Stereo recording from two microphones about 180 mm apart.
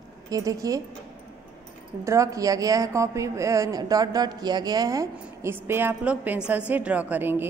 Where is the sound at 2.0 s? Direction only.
15° right (ahead or behind).